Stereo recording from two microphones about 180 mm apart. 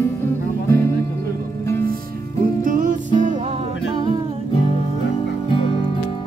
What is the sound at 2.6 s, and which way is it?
Music, 50° right (ahead or behind).